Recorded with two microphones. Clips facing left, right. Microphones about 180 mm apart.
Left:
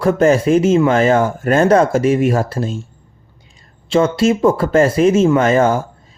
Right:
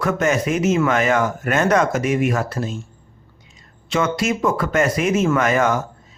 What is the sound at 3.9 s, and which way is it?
Speech, 30° left (ahead or behind).